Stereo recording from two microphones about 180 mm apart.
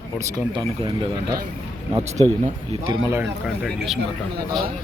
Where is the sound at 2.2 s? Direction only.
35° right (ahead or behind).